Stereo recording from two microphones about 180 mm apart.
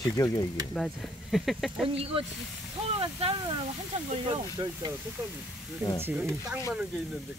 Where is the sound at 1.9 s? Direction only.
30° right (ahead or behind).